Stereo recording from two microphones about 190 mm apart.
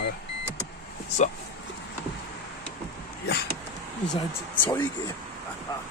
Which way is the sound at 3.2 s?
60° left (ahead or behind).